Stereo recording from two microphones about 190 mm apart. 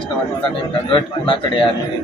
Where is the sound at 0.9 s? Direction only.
25° left (ahead or behind).